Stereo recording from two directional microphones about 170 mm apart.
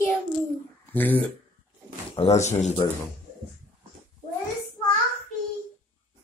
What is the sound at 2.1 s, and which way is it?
Speech, 40° left (ahead or behind).